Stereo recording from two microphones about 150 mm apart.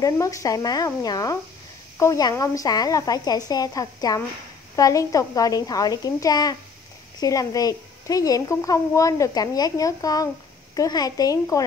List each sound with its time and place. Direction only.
0.0 s speech: 20° left (ahead or behind)